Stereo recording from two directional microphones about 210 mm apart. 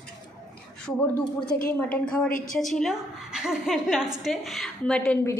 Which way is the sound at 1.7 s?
5° left (ahead or behind).